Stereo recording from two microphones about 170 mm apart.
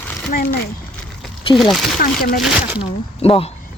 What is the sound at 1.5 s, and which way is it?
Speech, 30° left (ahead or behind).